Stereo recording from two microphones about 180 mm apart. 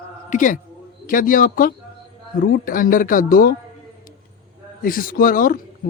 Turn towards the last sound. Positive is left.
turn(degrees=50)  # may be behind; listen again after turning